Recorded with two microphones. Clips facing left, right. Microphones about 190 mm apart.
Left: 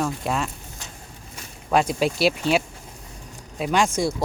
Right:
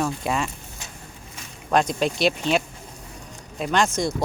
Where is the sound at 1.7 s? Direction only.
5° left (ahead or behind).